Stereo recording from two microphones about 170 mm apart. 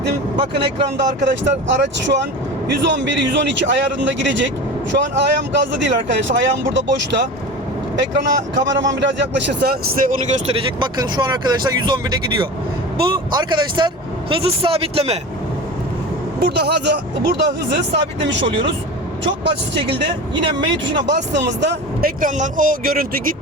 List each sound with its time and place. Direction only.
0.3 s speech: 30° right (ahead or behind)
1.2 s speech: 90° right
10.8 s speech: 25° right (ahead or behind)
13.0 s speech: 25° right (ahead or behind)
16.4 s speech: 75° right (ahead or behind); by 18.7 s 90° right
21.1 s speech: 90° right
22.2 s speech: 50° right (ahead or behind)